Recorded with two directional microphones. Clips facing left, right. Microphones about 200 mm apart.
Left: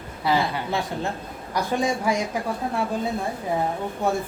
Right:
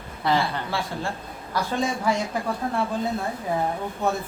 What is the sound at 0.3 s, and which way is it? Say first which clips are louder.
Speech: left 1 dB; 20° left (ahead or behind).